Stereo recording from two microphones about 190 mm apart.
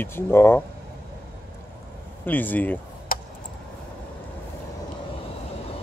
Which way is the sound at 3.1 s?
50° left (ahead or behind).